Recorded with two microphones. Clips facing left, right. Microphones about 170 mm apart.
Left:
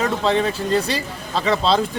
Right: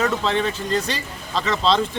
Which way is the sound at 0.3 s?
10° left (ahead or behind).